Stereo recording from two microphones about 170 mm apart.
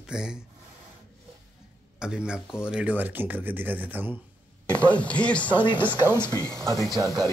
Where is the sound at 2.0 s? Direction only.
5° right (ahead or behind).